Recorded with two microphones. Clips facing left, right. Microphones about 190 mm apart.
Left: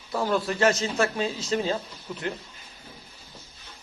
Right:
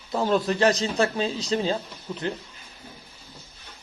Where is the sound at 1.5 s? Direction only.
30° right (ahead or behind).